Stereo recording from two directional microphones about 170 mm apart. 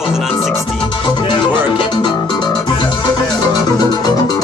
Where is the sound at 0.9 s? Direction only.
25° left (ahead or behind).